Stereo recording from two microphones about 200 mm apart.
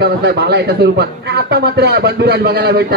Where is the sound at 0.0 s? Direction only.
55° right (ahead or behind).